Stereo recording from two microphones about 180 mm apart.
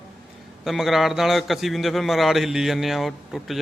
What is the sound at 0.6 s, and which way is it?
A man's voice, centre (ahead or behind).